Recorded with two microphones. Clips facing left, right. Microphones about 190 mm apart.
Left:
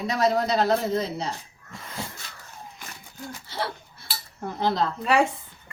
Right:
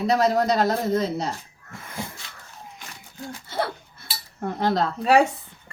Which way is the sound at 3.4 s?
50° right (ahead or behind).